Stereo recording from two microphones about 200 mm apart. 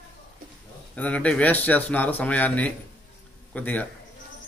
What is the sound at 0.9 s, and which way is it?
A man's voice, 5° left (ahead or behind).